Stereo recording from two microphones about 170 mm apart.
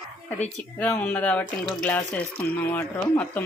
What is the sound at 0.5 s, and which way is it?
Speech, 5° left (ahead or behind).